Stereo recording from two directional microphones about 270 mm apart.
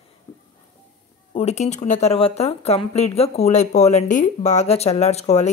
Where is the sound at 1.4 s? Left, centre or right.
Left.